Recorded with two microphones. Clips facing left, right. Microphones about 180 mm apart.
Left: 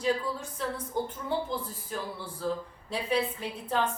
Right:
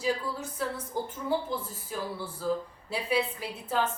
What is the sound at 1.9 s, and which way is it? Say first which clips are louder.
A woman's voice: right 4 dB; 5° right (ahead or behind).